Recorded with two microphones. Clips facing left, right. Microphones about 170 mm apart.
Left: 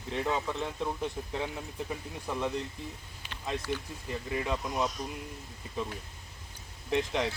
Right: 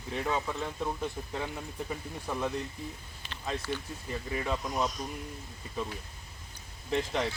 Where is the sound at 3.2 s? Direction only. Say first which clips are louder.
Even; 10° left (ahead or behind).